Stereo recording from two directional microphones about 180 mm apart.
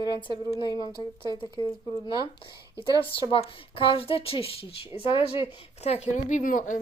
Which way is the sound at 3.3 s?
30° left (ahead or behind).